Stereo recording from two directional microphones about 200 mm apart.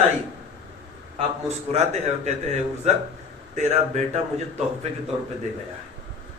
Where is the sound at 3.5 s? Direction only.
35° right (ahead or behind).